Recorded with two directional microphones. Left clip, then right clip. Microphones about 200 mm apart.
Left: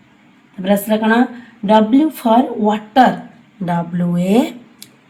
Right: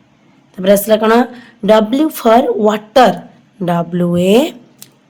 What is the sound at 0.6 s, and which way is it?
Speech, 45° right (ahead or behind).